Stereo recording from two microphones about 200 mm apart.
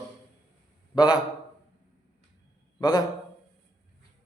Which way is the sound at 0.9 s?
20° left (ahead or behind).